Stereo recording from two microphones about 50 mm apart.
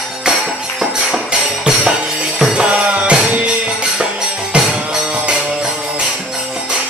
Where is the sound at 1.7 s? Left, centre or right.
Right.